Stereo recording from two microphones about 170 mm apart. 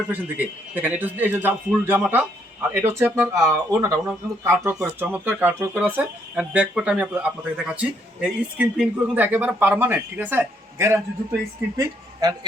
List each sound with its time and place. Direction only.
0.1 s speech: 10° right (ahead or behind)